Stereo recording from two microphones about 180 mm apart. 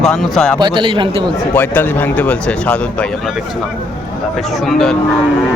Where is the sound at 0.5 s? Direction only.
25° right (ahead or behind).